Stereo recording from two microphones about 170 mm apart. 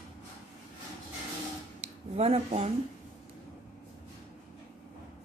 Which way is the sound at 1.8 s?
40° right (ahead or behind).